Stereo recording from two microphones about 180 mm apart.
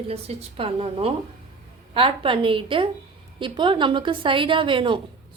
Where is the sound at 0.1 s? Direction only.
35° right (ahead or behind).